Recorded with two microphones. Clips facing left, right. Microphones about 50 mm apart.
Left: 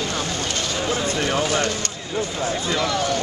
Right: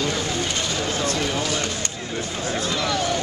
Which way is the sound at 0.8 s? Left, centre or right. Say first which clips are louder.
Left 3 dB; centre.